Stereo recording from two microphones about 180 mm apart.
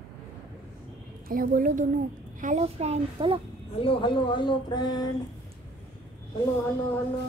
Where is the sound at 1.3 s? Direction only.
50° right (ahead or behind); by 3.4 s 30° right (ahead or behind).